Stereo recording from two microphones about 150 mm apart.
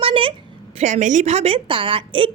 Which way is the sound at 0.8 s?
55° right (ahead or behind).